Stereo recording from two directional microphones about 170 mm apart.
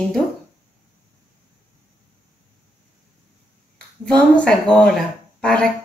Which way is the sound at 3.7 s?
5° left (ahead or behind).